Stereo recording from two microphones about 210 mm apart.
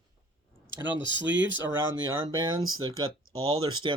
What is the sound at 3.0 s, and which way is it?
Speech, 75° right (ahead or behind).